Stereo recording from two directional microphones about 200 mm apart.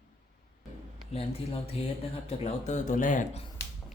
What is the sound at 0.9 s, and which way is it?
Speech, 30° left (ahead or behind).